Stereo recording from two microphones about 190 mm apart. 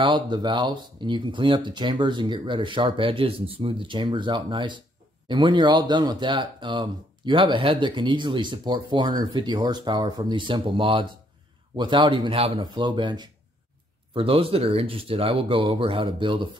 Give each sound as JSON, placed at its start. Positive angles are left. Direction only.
{"t": 0.0, "sound": "speech", "side_deg": -25}